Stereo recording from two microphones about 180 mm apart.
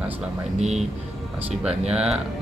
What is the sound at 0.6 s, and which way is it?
Speech, 40° right (ahead or behind).